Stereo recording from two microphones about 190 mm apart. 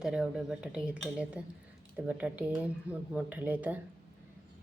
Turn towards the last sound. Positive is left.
turn(degrees=-10)  # may be behind; listen again after turning